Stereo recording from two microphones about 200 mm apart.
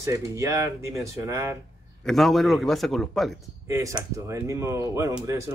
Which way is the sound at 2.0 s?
Centre (ahead or behind).